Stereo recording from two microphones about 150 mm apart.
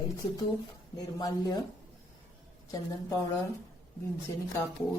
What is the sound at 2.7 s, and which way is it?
Speech, 20° left (ahead or behind).